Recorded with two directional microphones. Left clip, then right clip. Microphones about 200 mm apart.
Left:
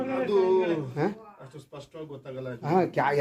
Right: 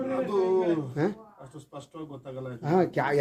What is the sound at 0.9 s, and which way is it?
Speech, 55° right (ahead or behind).